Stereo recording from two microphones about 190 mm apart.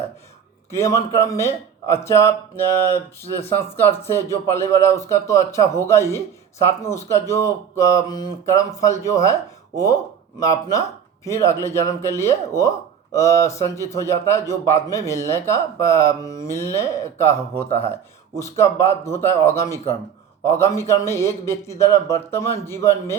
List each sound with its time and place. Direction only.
0.7 s speech: 15° left (ahead or behind)
3.8 s speech: 15° left (ahead or behind)